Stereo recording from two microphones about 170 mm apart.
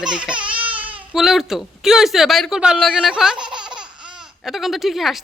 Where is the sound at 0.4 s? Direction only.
30° right (ahead or behind).